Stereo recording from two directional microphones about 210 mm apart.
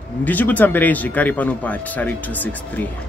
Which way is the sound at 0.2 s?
10° left (ahead or behind).